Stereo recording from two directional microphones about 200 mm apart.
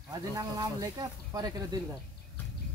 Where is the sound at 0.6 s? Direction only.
20° right (ahead or behind).